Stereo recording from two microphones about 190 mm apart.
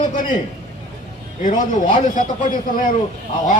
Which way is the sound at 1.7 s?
40° left (ahead or behind).